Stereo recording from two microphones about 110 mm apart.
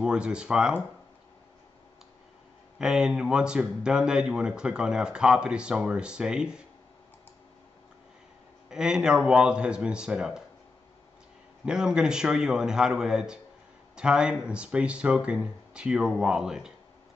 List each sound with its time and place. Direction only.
0.0 s speech: 10° right (ahead or behind)
2.8 s speech: 5° right (ahead or behind)
8.6 s speech: 5° right (ahead or behind)
11.6 s speech: 5° right (ahead or behind)